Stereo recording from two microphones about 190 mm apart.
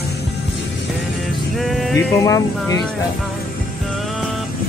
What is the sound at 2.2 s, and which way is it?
Speech, 15° left (ahead or behind).